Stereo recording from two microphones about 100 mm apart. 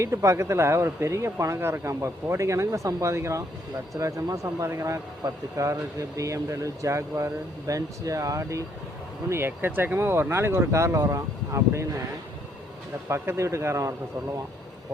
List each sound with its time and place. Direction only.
0.0 s a man's voice: 30° right (ahead or behind)
13.1 s a man's voice: 25° right (ahead or behind)